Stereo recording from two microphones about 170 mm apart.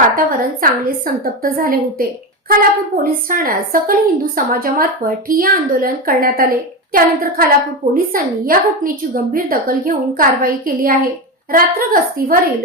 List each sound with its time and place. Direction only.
0.2 s a woman's voice: 55° right (ahead or behind)